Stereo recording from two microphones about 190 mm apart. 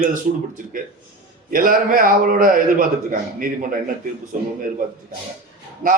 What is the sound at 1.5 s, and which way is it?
A man's voice, 50° right (ahead or behind).